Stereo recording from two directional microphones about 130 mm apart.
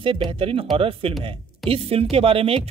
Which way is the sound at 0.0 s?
40° right (ahead or behind).